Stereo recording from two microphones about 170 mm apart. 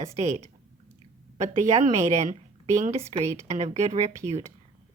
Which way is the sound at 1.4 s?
40° right (ahead or behind).